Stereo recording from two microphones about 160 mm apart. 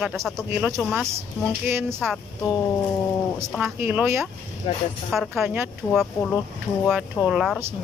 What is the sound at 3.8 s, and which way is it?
Speech, 15° right (ahead or behind).